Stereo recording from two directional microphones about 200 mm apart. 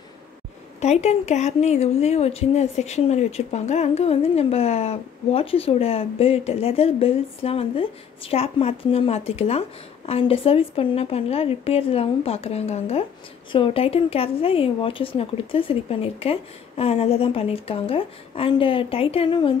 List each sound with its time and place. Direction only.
0.7 s speech: 35° left (ahead or behind)